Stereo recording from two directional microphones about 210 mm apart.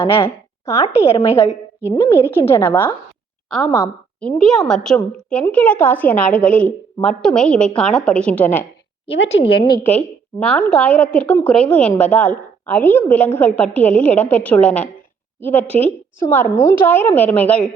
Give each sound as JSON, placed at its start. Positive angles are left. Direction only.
{"t": 0.0, "sound": "a woman's voice", "side_deg": 25}
{"t": 9.2, "sound": "a woman's voice", "side_deg": 30}
{"t": 10.4, "sound": "a woman's voice", "side_deg": 5}